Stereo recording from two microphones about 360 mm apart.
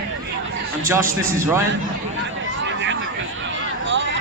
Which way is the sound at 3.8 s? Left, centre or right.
Right.